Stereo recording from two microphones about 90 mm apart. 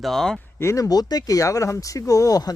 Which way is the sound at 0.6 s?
35° left (ahead or behind).